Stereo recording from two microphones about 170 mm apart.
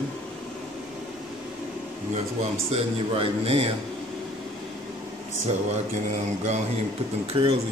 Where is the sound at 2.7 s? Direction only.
35° right (ahead or behind).